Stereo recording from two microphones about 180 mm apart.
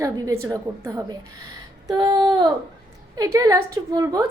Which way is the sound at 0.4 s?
20° right (ahead or behind).